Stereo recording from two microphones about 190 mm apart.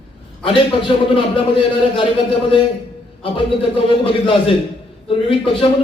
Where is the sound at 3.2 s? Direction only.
25° left (ahead or behind).